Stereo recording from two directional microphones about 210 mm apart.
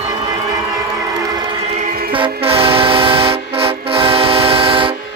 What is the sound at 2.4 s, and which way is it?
Train, 25° right (ahead or behind).